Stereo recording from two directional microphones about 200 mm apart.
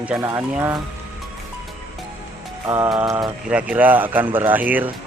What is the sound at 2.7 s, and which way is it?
Speech, 15° right (ahead or behind).